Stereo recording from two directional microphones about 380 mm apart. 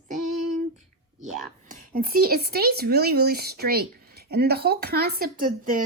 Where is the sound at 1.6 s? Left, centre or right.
Right.